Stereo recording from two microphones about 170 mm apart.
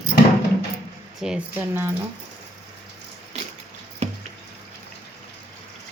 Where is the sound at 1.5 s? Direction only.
15° right (ahead or behind).